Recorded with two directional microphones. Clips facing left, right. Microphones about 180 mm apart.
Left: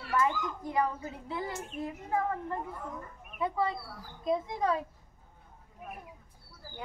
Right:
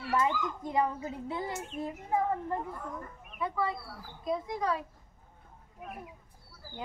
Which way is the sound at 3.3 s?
20° left (ahead or behind).